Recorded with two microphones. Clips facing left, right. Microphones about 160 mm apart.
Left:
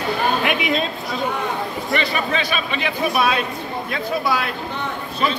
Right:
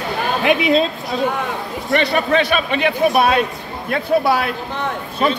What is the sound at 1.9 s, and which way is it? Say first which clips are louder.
A man's voice: right 7 dB; 50° right (ahead or behind).